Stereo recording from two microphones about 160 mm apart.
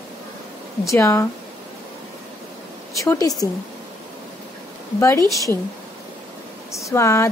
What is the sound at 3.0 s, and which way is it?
Speech, 20° left (ahead or behind).